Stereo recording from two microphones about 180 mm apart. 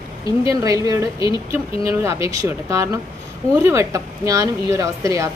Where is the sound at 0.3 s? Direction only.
20° right (ahead or behind).